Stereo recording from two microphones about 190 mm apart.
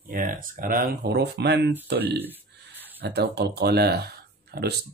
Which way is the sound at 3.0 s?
60° right (ahead or behind).